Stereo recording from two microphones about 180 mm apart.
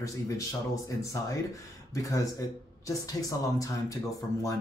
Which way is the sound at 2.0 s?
15° left (ahead or behind).